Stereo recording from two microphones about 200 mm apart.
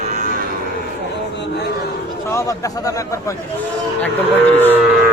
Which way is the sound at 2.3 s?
15° left (ahead or behind).